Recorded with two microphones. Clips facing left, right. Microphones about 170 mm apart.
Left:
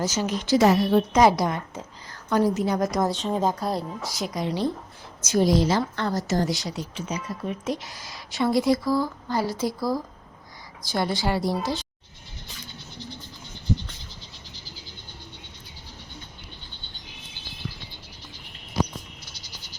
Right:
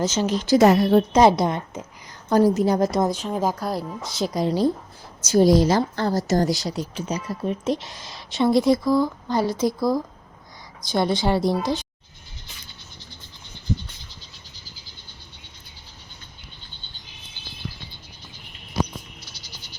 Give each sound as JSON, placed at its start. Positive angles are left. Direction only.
{"t": 0.3, "sound": "a woman's voice", "side_deg": -35}
{"t": 0.6, "sound": "a woman's voice", "side_deg": -50}
{"t": 1.1, "sound": "a woman's voice", "side_deg": -25}
{"t": 2.3, "sound": "a woman's voice", "side_deg": -35}
{"t": 3.2, "sound": "a woman's voice", "side_deg": 0}
{"t": 4.4, "sound": "a woman's voice", "side_deg": -40}